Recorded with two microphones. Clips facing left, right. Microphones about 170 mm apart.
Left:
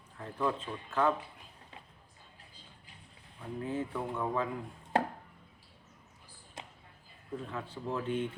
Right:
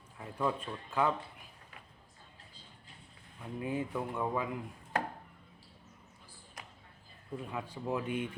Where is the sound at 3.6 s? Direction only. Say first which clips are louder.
Even; 10° right (ahead or behind).